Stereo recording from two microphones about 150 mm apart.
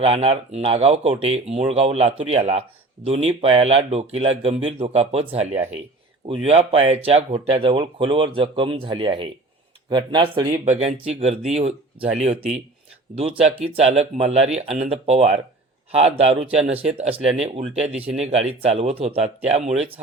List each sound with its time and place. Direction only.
0.0 s speech: 45° right (ahead or behind)
6.2 s speech: 40° right (ahead or behind)
10.8 s speech: 40° right (ahead or behind)
17.4 s speech: 5° right (ahead or behind)
18.2 s speech: 45° right (ahead or behind)